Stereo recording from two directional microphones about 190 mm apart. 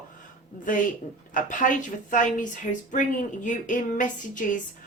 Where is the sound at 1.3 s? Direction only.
45° left (ahead or behind).